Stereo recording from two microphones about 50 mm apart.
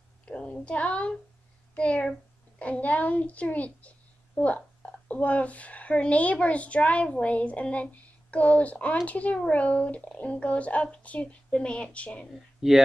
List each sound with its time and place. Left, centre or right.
0.2 s a sound: left
1.8 s speech: left
12.6 s speech: centre